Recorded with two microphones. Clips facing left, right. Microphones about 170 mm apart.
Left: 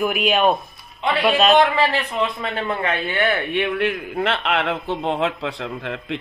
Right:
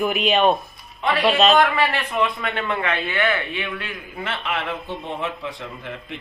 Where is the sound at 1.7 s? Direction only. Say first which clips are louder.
Left 2 dB; 30° left (ahead or behind).